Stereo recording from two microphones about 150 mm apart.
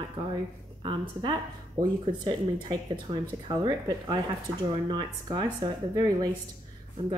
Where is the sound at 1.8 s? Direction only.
30° right (ahead or behind).